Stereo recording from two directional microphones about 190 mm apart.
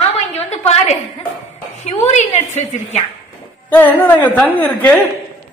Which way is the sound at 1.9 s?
35° left (ahead or behind).